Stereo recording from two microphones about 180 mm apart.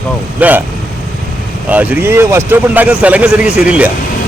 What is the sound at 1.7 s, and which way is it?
A man's voice, 10° right (ahead or behind).